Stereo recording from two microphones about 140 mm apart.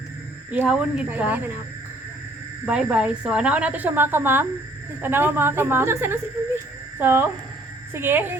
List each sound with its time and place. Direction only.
0.5 s a woman's voice: 10° right (ahead or behind)
2.6 s a woman's voice: 5° right (ahead or behind)